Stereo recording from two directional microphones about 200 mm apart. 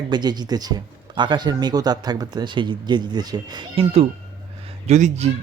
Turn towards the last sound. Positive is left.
turn(degrees=-35)  # may be behind; listen again after turning